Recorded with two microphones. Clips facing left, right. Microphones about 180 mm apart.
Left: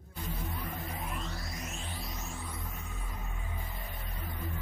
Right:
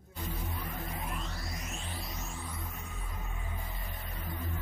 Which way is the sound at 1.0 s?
Centre (ahead or behind).